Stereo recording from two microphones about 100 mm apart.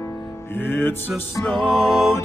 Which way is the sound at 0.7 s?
20° left (ahead or behind).